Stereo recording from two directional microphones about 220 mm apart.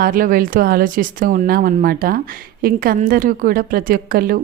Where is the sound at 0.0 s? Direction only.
40° right (ahead or behind).